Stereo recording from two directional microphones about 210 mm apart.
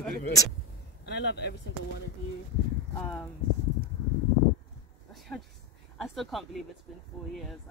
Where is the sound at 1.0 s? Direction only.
55° left (ahead or behind).